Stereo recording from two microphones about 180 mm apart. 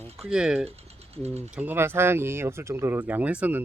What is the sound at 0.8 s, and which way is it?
Mechanisms, 35° right (ahead or behind).